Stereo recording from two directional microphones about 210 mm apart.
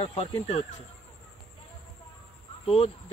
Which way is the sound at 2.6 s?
30° left (ahead or behind).